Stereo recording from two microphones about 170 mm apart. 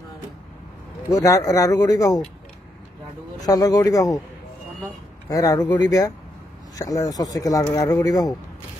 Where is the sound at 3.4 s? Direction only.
20° left (ahead or behind).